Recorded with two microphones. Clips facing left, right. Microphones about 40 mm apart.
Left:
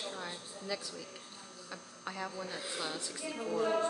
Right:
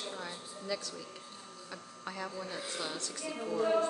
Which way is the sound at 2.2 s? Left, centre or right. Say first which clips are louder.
Right 1 dB; centre.